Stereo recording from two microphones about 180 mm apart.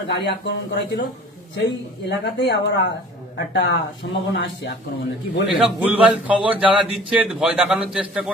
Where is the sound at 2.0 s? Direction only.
70° left (ahead or behind).